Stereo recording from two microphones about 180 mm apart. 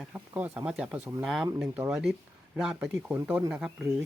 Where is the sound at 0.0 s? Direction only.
10° right (ahead or behind).